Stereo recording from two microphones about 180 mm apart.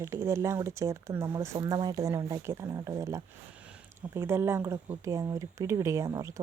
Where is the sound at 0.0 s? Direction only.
15° right (ahead or behind).